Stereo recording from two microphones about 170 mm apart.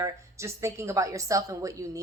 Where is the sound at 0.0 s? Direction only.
15° right (ahead or behind).